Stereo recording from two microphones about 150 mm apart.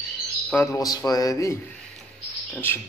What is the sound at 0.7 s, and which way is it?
Speech, 25° left (ahead or behind).